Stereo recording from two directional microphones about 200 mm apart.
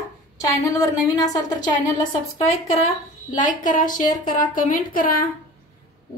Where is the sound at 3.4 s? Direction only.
40° left (ahead or behind).